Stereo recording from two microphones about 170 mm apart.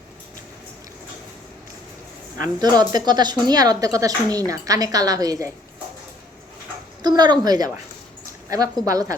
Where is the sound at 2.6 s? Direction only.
25° right (ahead or behind).